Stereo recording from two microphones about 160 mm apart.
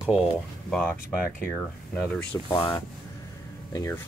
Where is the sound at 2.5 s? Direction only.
25° left (ahead or behind).